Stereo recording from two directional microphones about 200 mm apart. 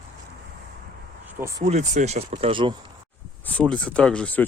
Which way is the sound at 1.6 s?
35° right (ahead or behind).